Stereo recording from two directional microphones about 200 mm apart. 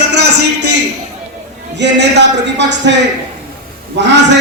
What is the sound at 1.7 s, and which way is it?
A man's voice, 60° right (ahead or behind).